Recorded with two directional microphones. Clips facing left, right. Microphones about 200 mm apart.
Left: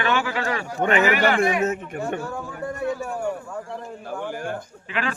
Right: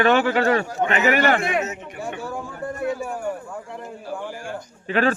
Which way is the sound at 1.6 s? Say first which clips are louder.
Left 4 dB; 50° left (ahead or behind).